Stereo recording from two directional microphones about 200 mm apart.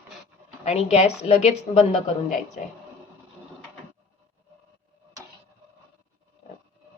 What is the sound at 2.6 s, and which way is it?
Speech, 40° left (ahead or behind).